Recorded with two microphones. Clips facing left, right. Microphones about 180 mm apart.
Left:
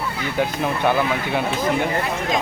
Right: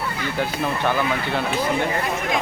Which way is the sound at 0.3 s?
15° left (ahead or behind).